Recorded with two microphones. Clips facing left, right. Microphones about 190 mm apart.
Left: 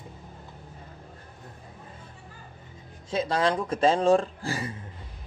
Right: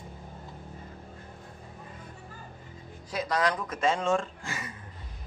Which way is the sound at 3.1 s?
25° left (ahead or behind).